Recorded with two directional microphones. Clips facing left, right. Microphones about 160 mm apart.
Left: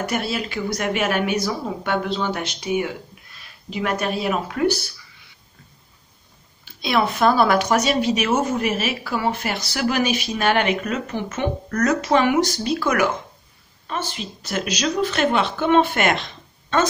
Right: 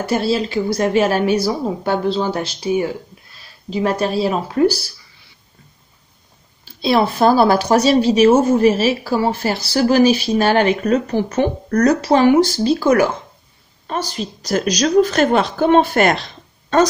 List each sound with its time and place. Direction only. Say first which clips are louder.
0.0 s speech: right 7 dB; 30° right (ahead or behind)
6.6 s speech: right 5 dB; 30° right (ahead or behind)